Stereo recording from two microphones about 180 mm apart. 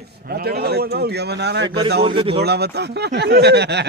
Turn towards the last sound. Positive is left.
turn(degrees=-70)  # may be behind; listen again after turning